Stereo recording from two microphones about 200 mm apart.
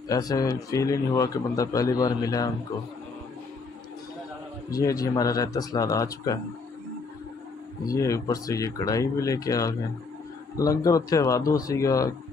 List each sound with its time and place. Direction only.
0.1 s a man's voice: 20° left (ahead or behind)
4.6 s a man's voice: 15° left (ahead or behind)
7.8 s a man's voice: 15° left (ahead or behind)